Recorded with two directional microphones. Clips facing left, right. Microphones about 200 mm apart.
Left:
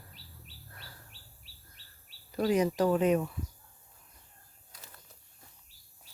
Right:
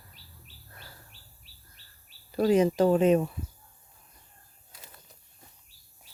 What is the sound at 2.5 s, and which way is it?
Speech, 25° right (ahead or behind).